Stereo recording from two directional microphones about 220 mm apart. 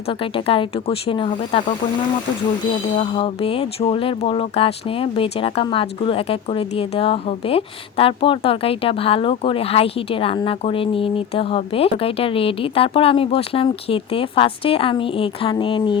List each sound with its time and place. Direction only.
0.1 s speech: 25° left (ahead or behind)
3.0 s speech: 25° left (ahead or behind)